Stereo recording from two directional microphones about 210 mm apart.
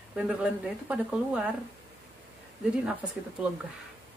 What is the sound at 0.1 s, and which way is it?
Speech, 5° right (ahead or behind).